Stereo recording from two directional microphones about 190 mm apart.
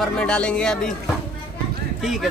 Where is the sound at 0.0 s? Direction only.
5° left (ahead or behind).